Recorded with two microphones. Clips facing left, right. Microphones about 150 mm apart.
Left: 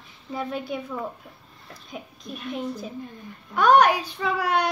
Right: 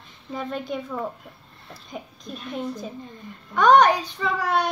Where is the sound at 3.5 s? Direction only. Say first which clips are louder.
Right 1 dB; 10° left (ahead or behind).